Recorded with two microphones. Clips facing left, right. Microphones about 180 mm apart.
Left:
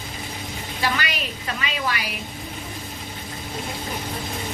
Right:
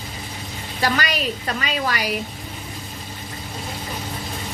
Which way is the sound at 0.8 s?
40° right (ahead or behind).